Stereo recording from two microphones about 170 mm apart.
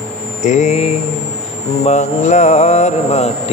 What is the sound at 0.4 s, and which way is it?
Mantra, 45° left (ahead or behind).